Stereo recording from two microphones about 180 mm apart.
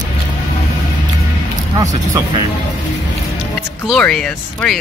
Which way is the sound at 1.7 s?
20° right (ahead or behind).